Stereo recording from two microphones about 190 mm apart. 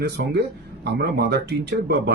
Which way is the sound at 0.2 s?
65° right (ahead or behind).